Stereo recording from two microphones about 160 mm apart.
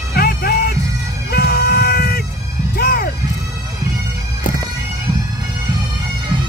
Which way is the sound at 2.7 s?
75° left (ahead or behind).